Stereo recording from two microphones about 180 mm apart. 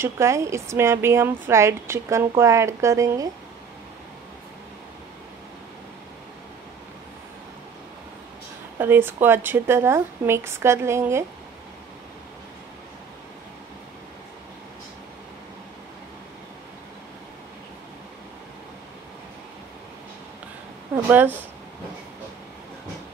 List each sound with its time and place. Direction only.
0.0 s a woman's voice: 15° right (ahead or behind)
8.7 s a woman's voice: 10° right (ahead or behind)
20.9 s speech: 10° right (ahead or behind)